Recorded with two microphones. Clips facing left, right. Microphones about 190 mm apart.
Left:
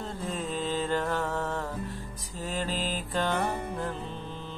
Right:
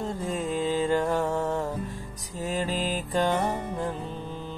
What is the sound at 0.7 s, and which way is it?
Mantra, 10° right (ahead or behind).